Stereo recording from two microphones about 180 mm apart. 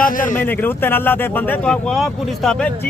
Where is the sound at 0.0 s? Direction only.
50° left (ahead or behind).